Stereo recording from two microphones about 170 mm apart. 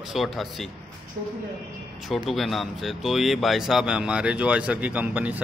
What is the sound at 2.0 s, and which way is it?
A man's voice, centre (ahead or behind).